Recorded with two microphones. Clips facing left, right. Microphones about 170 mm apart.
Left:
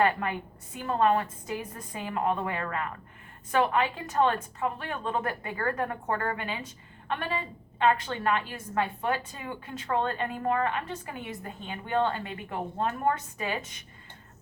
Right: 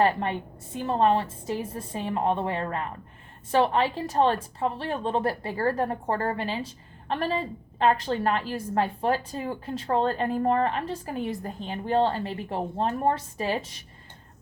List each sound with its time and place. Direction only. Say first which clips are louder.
0.0 s a woman's voice: right 3 dB; 30° right (ahead or behind)